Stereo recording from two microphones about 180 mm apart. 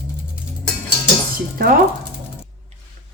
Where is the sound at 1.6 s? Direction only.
55° right (ahead or behind).